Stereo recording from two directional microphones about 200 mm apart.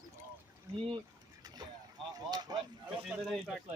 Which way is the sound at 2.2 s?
20° right (ahead or behind).